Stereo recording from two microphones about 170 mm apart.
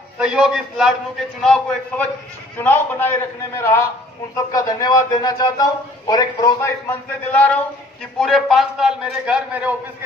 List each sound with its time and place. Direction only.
0.2 s a man's voice: 5° right (ahead or behind)